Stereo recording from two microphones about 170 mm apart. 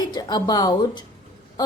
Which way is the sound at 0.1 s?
25° left (ahead or behind).